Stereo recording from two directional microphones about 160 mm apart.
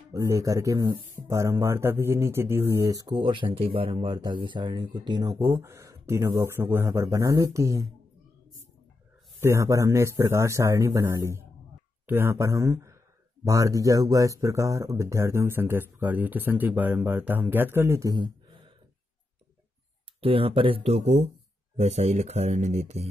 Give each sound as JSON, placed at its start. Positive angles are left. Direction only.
{"t": 0.1, "sound": "speech", "side_deg": -20}
{"t": 9.4, "sound": "speech", "side_deg": -20}
{"t": 20.2, "sound": "speech", "side_deg": -35}